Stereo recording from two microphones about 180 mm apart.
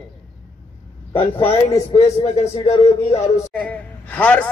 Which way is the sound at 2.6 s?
35° left (ahead or behind).